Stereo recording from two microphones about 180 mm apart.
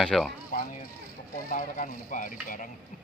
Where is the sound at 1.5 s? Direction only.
40° left (ahead or behind).